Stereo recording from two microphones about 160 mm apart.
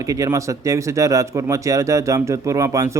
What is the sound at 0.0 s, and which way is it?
Speech, 20° right (ahead or behind).